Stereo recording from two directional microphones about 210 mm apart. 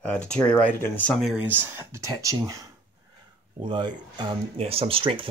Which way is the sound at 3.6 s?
20° right (ahead or behind).